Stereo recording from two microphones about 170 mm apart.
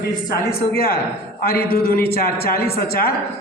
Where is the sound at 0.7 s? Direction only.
65° left (ahead or behind).